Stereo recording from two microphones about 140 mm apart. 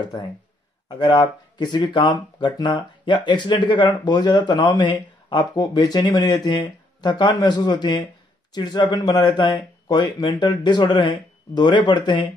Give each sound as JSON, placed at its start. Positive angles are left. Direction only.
{"t": 0.0, "sound": "speech", "side_deg": 30}